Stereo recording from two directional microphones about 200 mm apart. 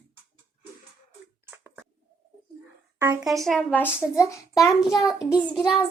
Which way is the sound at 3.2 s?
Centre (ahead or behind).